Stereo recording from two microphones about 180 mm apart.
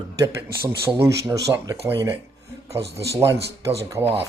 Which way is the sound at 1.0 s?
20° right (ahead or behind).